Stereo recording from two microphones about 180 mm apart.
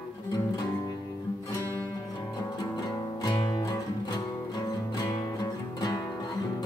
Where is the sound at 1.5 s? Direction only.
15° left (ahead or behind).